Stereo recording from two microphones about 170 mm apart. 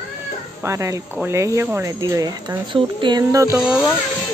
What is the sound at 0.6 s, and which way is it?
Speech, 15° right (ahead or behind).